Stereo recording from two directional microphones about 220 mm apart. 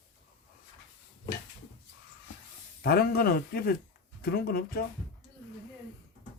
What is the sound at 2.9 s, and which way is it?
Speech, 45° left (ahead or behind).